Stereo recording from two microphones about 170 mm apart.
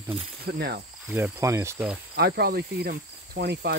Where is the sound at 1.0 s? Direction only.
10° right (ahead or behind).